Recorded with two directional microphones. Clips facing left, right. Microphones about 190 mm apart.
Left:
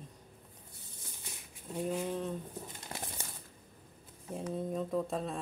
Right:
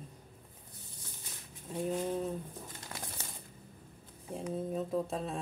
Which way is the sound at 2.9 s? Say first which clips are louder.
Left 2 dB; 30° left (ahead or behind).